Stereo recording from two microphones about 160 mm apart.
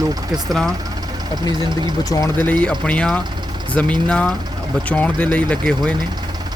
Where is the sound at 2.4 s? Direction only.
10° left (ahead or behind).